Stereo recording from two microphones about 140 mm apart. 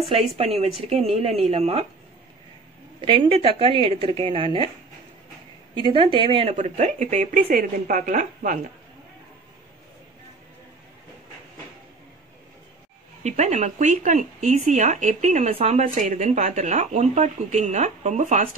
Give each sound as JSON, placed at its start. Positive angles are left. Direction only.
{"t": 0.4, "sound": "a woman's voice", "side_deg": -45}
{"t": 3.0, "sound": "speech", "side_deg": -35}
{"t": 5.8, "sound": "speech", "side_deg": -35}
{"t": 6.5, "sound": "speech", "side_deg": -60}
{"t": 13.2, "sound": "speech", "side_deg": -55}